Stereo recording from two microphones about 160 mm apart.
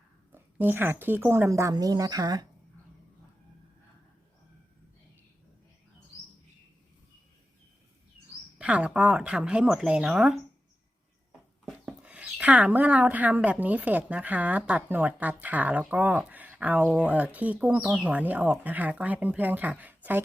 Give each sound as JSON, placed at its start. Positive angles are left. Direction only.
{"t": 0.3, "sound": "speech", "side_deg": -15}
{"t": 8.5, "sound": "speech", "side_deg": -10}